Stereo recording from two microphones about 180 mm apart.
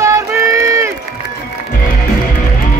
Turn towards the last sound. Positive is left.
turn(degrees=-15)  # may be behind; listen again after turning